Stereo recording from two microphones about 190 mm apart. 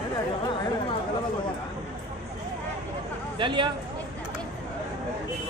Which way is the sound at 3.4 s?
25° right (ahead or behind).